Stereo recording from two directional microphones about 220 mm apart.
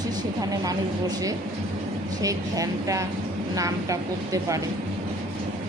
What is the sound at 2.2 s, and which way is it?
A woman's voice, 15° right (ahead or behind).